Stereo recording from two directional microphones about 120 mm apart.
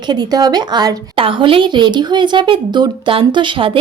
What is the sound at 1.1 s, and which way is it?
A woman's voice, 50° right (ahead or behind).